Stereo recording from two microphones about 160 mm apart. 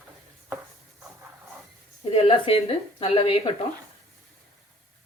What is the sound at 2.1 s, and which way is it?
A woman's voice, 40° left (ahead or behind).